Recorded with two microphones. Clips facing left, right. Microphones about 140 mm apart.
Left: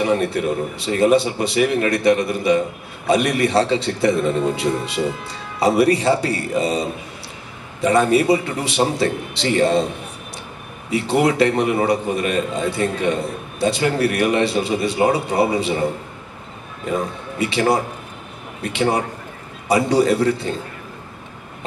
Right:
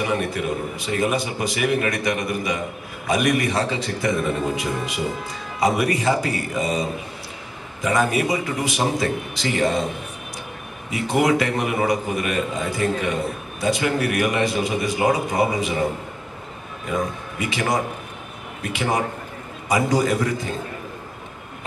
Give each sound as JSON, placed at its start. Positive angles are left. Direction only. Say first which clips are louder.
{"t": 0.0, "sound": "a man's voice", "louder": "left 5 dB", "side_deg": 30}
{"t": 10.9, "sound": "a man's voice", "louder": "left 2 dB", "side_deg": 30}